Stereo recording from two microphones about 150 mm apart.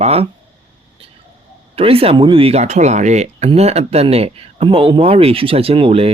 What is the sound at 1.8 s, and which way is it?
Speech, 40° right (ahead or behind).